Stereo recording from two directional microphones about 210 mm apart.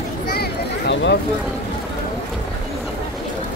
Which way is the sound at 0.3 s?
50° left (ahead or behind).